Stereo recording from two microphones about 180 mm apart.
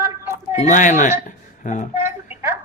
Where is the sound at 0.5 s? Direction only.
45° left (ahead or behind).